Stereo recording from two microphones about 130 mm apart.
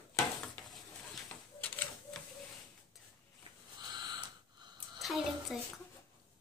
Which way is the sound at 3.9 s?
35° right (ahead or behind).